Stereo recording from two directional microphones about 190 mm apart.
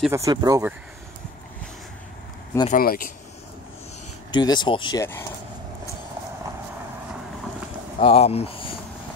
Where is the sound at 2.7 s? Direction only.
50° left (ahead or behind).